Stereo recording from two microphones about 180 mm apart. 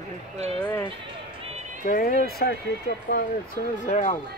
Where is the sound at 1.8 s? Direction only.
55° left (ahead or behind).